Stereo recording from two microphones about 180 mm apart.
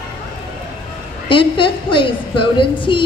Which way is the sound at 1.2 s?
30° left (ahead or behind).